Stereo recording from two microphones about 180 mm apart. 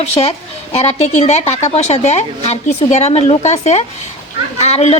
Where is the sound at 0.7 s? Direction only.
35° left (ahead or behind).